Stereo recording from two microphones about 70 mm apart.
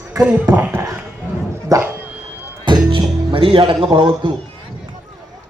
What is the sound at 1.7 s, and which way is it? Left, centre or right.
Speech, right.